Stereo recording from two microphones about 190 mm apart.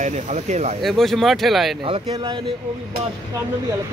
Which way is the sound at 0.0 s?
35° right (ahead or behind).